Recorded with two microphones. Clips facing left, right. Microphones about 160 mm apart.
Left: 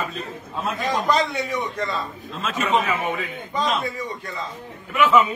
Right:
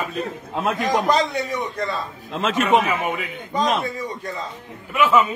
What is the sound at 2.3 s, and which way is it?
Speech, 80° right.